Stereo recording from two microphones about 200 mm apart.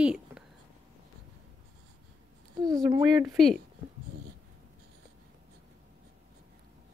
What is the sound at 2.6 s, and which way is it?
Speech, 20° right (ahead or behind).